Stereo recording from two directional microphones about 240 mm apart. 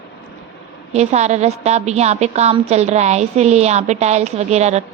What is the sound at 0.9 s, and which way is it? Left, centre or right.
A woman's voice, right.